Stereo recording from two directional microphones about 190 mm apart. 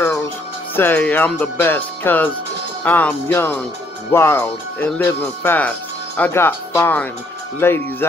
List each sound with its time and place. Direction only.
0.0 s music: 15° left (ahead or behind)
0.7 s speech: 10° left (ahead or behind)